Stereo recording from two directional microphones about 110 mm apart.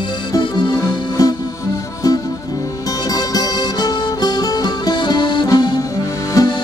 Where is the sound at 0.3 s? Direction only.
45° left (ahead or behind).